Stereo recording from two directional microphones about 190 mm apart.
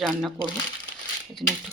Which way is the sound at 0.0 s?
Centre (ahead or behind).